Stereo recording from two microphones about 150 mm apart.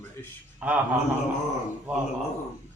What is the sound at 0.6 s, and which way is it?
Speech, 10° right (ahead or behind).